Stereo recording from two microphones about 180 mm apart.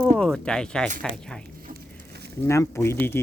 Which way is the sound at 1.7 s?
65° right (ahead or behind).